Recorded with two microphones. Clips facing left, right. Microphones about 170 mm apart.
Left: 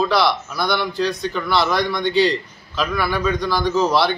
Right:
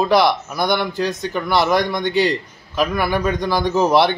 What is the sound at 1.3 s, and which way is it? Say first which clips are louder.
Speech: right 6 dB; 15° right (ahead or behind).